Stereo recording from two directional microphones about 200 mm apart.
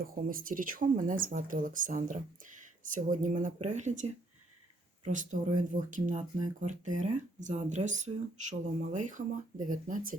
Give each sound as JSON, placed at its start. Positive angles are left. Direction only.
{"t": 0.0, "sound": "speech", "side_deg": -45}